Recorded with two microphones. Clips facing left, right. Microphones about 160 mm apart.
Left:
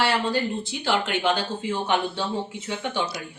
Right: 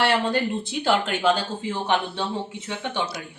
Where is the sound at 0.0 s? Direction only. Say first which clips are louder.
Right 2 dB; 55° right (ahead or behind).